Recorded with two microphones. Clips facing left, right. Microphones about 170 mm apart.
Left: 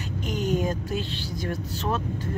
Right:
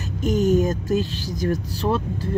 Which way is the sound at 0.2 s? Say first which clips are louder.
Right 8 dB; 45° right (ahead or behind).